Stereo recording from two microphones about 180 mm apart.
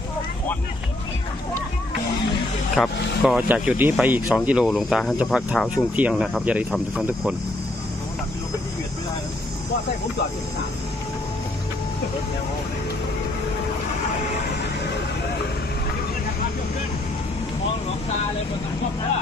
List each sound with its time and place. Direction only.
2.7 s speech: centre (ahead or behind)